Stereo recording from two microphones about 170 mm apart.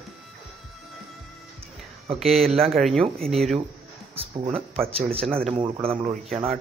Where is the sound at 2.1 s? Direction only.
Centre (ahead or behind).